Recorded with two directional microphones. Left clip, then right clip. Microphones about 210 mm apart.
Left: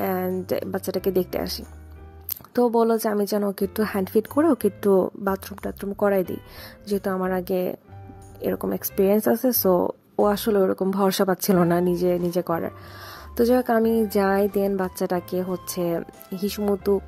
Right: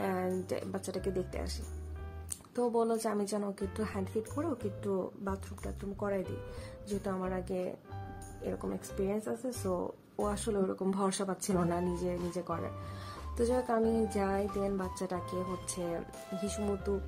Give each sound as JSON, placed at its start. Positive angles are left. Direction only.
{"t": 0.0, "sound": "a sound", "side_deg": 35}
{"t": 0.5, "sound": "speech", "side_deg": 35}
{"t": 2.5, "sound": "speech", "side_deg": 40}